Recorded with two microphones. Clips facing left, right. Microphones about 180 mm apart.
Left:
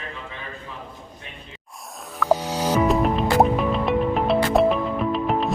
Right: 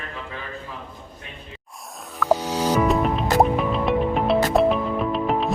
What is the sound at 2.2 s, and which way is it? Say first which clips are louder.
Music: even; centre (ahead or behind).